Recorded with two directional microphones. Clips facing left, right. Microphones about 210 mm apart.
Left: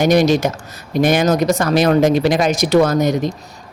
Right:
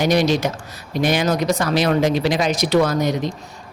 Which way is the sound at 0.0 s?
50° left (ahead or behind).